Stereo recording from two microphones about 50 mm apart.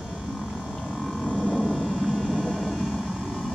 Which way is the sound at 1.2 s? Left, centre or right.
Centre.